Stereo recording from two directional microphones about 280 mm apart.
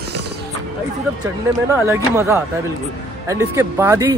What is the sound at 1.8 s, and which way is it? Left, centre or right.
Speech, centre.